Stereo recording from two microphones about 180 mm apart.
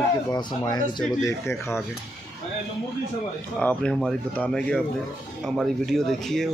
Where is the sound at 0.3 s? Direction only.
20° left (ahead or behind).